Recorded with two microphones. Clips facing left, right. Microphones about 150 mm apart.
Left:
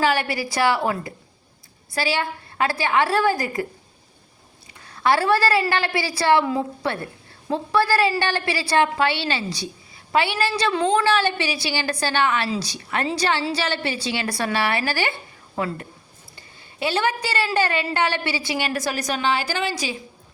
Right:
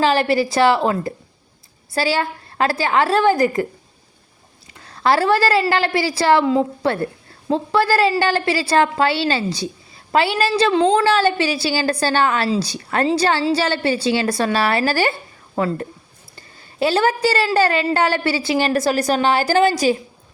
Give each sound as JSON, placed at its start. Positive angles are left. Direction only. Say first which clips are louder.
{"t": 0.0, "sound": "a woman's voice", "louder": "right 5 dB", "side_deg": -30}
{"t": 3.4, "sound": "a woman's voice", "louder": "right 8 dB", "side_deg": 25}
{"t": 5.0, "sound": "a woman's voice", "louder": "right 3 dB", "side_deg": -30}